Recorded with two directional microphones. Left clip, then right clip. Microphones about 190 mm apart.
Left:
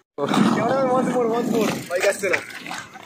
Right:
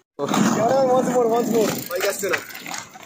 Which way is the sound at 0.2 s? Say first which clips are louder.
Left 1 dB; 5° right (ahead or behind).